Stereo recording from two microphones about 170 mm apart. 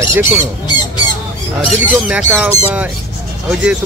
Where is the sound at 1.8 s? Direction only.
10° right (ahead or behind).